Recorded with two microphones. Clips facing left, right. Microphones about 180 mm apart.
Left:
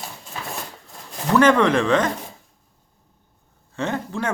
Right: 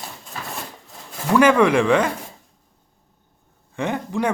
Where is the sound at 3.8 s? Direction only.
15° right (ahead or behind).